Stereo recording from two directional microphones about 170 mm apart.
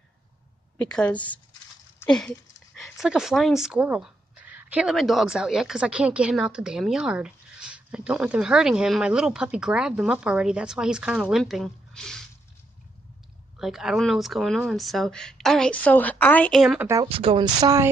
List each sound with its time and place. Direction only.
0.7 s a woman's voice: 5° left (ahead or behind)
13.6 s speech: 5° right (ahead or behind)
16.8 s speech: 20° right (ahead or behind)
17.1 s speech: 35° right (ahead or behind)